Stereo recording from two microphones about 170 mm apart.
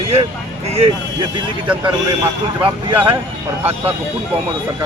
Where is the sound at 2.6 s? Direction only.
10° right (ahead or behind).